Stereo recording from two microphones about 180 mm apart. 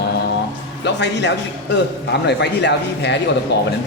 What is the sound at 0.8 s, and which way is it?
Speech, 75° left (ahead or behind).